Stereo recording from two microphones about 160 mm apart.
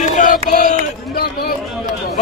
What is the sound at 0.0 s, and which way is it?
Child singing, 50° left (ahead or behind).